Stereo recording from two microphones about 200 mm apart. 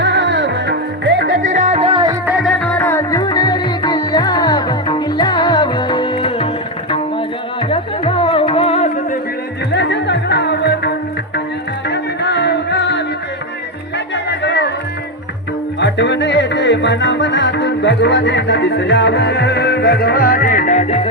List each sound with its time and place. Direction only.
0.0 s music: 60° right (ahead or behind); by 2.1 s 25° right (ahead or behind)
2.2 s music: centre (ahead or behind)
2.7 s music: 10° left (ahead or behind)
7.7 s music: 25° left (ahead or behind)
9.7 s music: 60° left (ahead or behind)
14.3 s music: 60° left (ahead or behind)
15.8 s music: 60° left (ahead or behind); by 21.1 s 35° left (ahead or behind)